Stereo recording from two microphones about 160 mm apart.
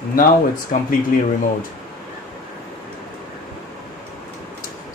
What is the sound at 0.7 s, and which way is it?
Speech, 50° left (ahead or behind).